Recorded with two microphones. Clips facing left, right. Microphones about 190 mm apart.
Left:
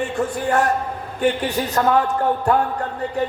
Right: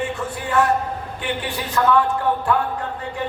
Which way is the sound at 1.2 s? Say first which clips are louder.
Left 8 dB; 40° left (ahead or behind).